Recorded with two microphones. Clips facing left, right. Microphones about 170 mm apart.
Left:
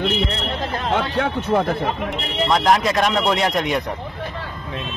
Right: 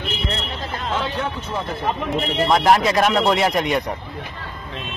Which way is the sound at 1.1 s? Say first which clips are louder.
Left 7 dB; 65° left (ahead or behind).